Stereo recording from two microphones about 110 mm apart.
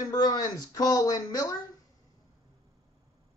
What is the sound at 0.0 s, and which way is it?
Speech, 35° left (ahead or behind).